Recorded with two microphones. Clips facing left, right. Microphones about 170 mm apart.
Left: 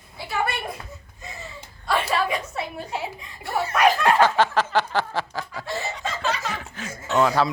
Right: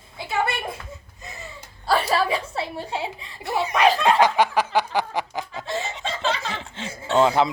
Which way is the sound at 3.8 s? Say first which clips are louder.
Even; 30° right (ahead or behind).